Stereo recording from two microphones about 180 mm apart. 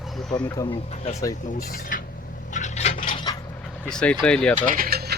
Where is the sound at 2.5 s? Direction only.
40° left (ahead or behind).